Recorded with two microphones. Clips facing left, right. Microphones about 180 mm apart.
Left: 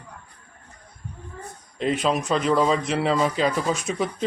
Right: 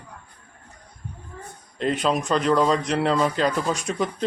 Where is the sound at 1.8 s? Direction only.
Centre (ahead or behind).